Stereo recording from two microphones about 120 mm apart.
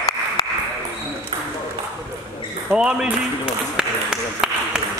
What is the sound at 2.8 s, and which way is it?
Speech, 5° right (ahead or behind).